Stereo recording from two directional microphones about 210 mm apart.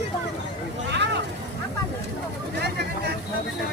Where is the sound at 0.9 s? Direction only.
55° right (ahead or behind).